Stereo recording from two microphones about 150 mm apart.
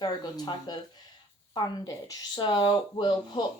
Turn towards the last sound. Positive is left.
turn(degrees=30)  # may be behind; listen again after turning